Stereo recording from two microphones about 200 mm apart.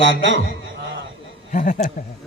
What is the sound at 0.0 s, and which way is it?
Speech, 65° right (ahead or behind).